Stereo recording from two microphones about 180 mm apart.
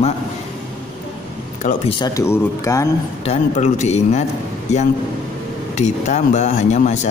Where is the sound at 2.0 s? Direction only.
20° left (ahead or behind).